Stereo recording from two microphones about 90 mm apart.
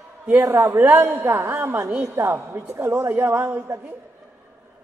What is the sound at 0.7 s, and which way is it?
A woman's voice, 20° right (ahead or behind).